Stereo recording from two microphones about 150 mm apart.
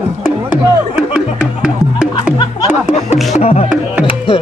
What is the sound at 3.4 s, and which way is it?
Music, 45° left (ahead or behind).